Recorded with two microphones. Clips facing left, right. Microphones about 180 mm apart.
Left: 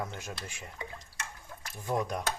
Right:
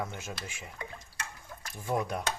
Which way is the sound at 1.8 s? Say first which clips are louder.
Even; 10° right (ahead or behind).